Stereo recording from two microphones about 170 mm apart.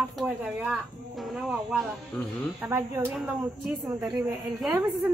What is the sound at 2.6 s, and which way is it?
A woman's voice, 15° right (ahead or behind).